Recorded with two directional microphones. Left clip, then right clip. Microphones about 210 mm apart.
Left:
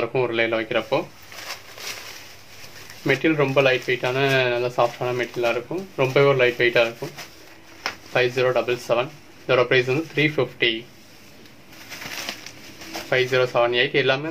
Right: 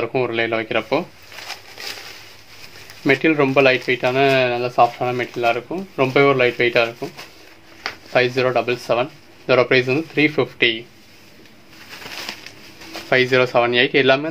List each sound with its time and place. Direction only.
0.0 s speech: 30° right (ahead or behind)
3.1 s speech: 45° right (ahead or behind)
8.1 s speech: 40° right (ahead or behind)
13.1 s speech: 45° right (ahead or behind)